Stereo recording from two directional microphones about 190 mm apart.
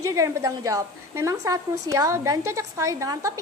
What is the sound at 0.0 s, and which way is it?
A woman's voice, 15° right (ahead or behind).